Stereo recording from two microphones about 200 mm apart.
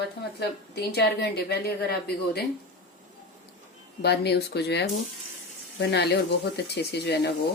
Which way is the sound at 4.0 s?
55° left (ahead or behind).